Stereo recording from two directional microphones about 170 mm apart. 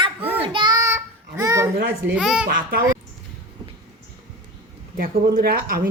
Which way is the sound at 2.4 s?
60° right (ahead or behind).